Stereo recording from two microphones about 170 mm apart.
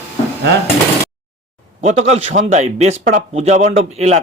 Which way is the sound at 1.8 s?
40° right (ahead or behind).